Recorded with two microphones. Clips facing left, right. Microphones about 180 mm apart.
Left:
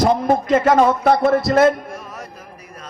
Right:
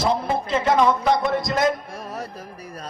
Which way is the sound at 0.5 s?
40° left (ahead or behind).